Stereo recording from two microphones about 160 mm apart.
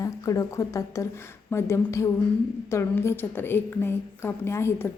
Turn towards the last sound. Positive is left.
turn(degrees=15)  # may be behind; listen again after turning